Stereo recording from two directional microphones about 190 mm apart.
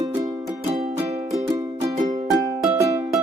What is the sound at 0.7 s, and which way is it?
Music, 35° right (ahead or behind).